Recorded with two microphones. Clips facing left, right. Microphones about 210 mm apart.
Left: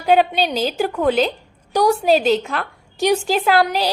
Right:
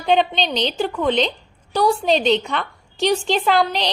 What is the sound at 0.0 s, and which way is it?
A woman's voice, 5° left (ahead or behind).